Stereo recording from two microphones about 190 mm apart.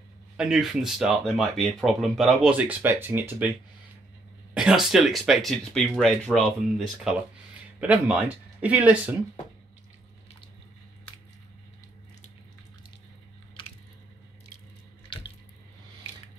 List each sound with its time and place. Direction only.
0.4 s speech: centre (ahead or behind)
4.6 s speech: 5° right (ahead or behind)
13.6 s a sound: 25° left (ahead or behind)